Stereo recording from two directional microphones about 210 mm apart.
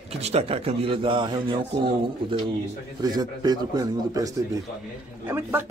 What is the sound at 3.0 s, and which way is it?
Speech, 20° right (ahead or behind).